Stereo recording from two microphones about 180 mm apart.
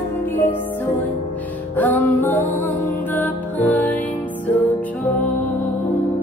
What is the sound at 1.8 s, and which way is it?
Music, 10° left (ahead or behind).